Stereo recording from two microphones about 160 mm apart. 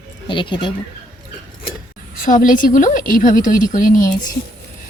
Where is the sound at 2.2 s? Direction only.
55° left (ahead or behind).